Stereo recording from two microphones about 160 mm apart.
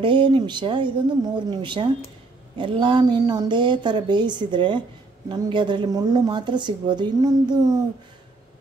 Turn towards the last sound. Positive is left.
turn(degrees=-25)  # may be behind; listen again after turning